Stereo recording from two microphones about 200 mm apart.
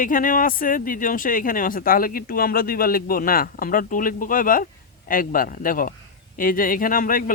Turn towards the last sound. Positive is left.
turn(degrees=45)  # may be behind; listen again after turning